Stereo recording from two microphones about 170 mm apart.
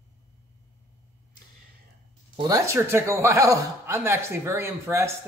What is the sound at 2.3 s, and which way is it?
Speech, 20° right (ahead or behind).